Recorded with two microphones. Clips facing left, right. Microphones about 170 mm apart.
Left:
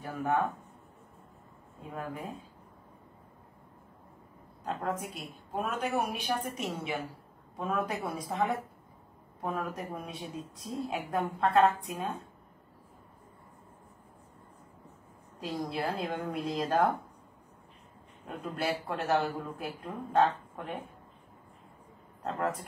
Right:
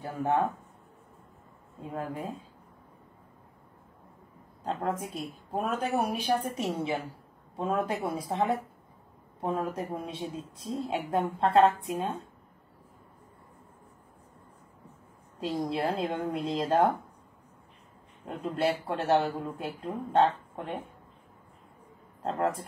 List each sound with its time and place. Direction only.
0.0 s a woman's voice: 25° right (ahead or behind)
1.8 s a woman's voice: 25° right (ahead or behind)
4.6 s a woman's voice: 30° right (ahead or behind)
15.4 s a woman's voice: 25° right (ahead or behind)
18.2 s a woman's voice: 25° right (ahead or behind)